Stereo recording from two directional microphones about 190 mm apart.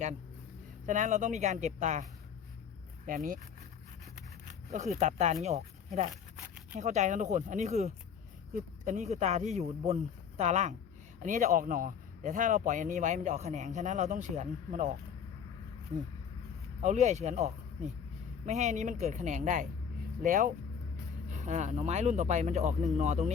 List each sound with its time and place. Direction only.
0.9 s speech: 40° right (ahead or behind)
4.7 s speech: 40° right (ahead or behind)
6.7 s speech: 35° right (ahead or behind)
16.8 s speech: 40° right (ahead or behind)
21.2 s speech: 40° right (ahead or behind)